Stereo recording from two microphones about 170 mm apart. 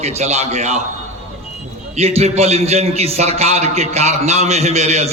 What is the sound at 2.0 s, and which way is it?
A man's voice, 40° right (ahead or behind).